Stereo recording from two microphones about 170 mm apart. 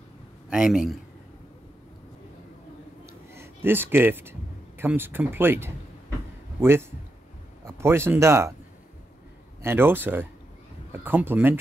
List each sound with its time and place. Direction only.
0.5 s a man's voice: 5° right (ahead or behind)
3.1 s a sound: 15° right (ahead or behind)
6.6 s speech: 15° right (ahead or behind)
9.6 s speech: 15° right (ahead or behind)